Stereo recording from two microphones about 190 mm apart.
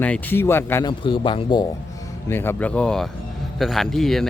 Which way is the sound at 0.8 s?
25° left (ahead or behind).